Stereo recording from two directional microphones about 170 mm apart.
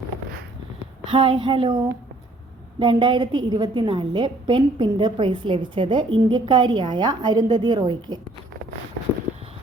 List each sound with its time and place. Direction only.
1.1 s a woman's voice: 30° right (ahead or behind)